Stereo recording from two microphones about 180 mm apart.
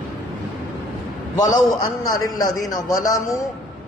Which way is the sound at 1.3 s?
20° left (ahead or behind).